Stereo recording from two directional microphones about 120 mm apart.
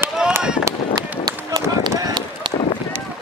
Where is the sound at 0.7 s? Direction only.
25° right (ahead or behind).